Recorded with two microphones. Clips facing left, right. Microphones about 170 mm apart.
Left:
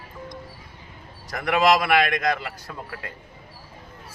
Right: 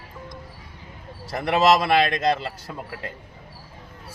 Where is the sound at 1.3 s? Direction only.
30° right (ahead or behind).